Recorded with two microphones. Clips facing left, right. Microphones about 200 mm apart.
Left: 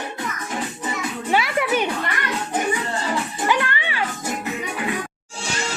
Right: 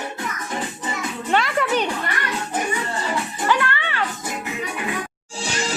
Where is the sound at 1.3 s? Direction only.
10° left (ahead or behind).